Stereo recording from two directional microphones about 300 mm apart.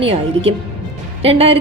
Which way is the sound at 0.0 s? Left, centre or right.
Centre.